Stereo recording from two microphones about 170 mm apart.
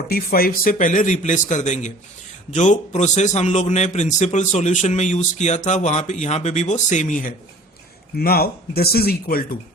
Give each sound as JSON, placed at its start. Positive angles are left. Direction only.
{"t": 0.1, "sound": "a man's voice", "side_deg": 60}
{"t": 8.2, "sound": "speech", "side_deg": 65}